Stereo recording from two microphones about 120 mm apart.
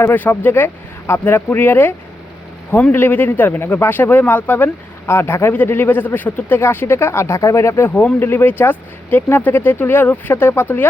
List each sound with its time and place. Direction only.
0.0 s speech: 15° left (ahead or behind)